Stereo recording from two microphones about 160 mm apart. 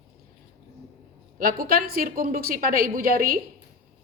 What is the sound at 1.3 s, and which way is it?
A woman's voice, 65° right (ahead or behind).